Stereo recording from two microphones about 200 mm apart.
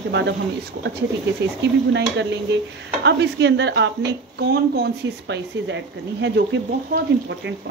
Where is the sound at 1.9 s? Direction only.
60° right (ahead or behind).